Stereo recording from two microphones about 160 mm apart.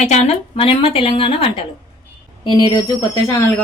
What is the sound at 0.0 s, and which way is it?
A woman's voice, 45° left (ahead or behind).